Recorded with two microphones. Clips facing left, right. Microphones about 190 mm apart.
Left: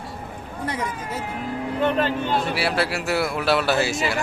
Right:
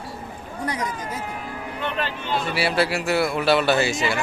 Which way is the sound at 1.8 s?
45° left (ahead or behind).